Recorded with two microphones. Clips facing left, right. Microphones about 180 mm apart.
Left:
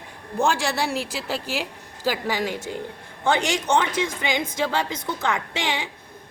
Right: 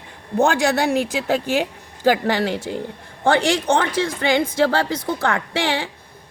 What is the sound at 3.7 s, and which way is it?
A woman's voice, 55° right (ahead or behind).